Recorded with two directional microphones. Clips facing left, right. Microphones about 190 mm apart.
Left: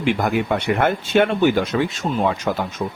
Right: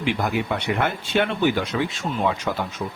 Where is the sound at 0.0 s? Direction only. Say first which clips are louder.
Left 4 dB; 50° left (ahead or behind).